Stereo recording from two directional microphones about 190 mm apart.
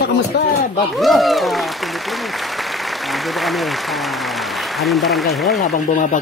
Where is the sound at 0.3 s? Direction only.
65° left (ahead or behind).